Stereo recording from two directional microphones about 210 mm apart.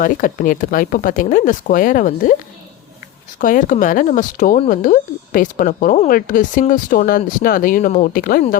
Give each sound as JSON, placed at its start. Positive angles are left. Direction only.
{"t": 0.0, "sound": "speech", "side_deg": 40}
{"t": 3.4, "sound": "speech", "side_deg": 40}